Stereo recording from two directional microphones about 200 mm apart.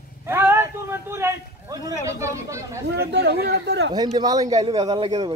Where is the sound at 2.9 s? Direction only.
55° right (ahead or behind).